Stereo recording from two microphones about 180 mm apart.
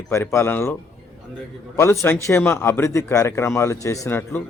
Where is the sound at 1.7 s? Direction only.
15° left (ahead or behind).